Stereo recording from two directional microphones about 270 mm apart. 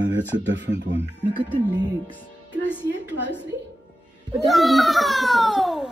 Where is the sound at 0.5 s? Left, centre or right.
Right.